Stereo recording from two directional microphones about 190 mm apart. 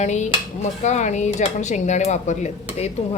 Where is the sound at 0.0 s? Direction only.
40° left (ahead or behind).